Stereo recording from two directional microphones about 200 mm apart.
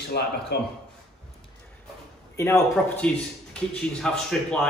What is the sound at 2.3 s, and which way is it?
Speech, 15° left (ahead or behind).